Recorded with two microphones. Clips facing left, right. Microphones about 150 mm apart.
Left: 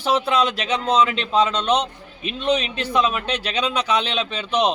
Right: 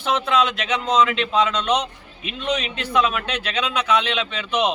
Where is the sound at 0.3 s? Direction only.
35° left (ahead or behind).